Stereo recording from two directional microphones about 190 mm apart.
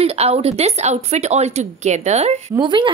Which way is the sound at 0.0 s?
35° right (ahead or behind).